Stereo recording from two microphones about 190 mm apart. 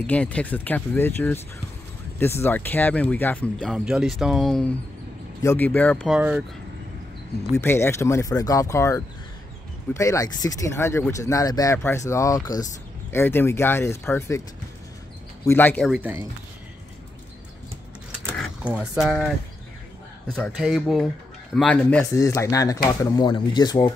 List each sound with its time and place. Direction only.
0.0 s speech: 5° left (ahead or behind)
5.4 s speech: 10° left (ahead or behind)
6.0 s speech: 5° right (ahead or behind)
7.5 s speech: 10° left (ahead or behind)
15.4 s speech: 10° left (ahead or behind)
15.9 s speech: 10° right (ahead or behind)
20.2 s speech: 5° left (ahead or behind)
22.2 s speech: 15° left (ahead or behind)